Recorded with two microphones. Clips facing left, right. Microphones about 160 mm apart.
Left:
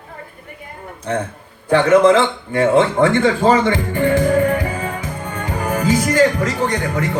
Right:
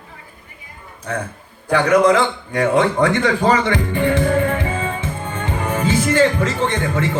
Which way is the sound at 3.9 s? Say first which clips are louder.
Left 1 dB; 20° right (ahead or behind).